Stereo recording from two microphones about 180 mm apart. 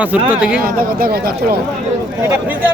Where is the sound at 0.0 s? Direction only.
10° right (ahead or behind).